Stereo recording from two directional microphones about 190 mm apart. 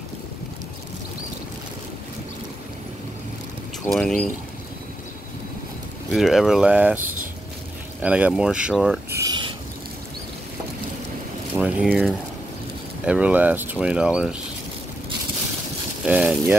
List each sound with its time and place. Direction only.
3.9 s speech: 5° left (ahead or behind)
6.1 s speech: centre (ahead or behind)
8.0 s speech: 5° right (ahead or behind)
9.1 s a sound: 20° right (ahead or behind)
11.5 s speech: 5° right (ahead or behind)
16.1 s speech: 5° right (ahead or behind)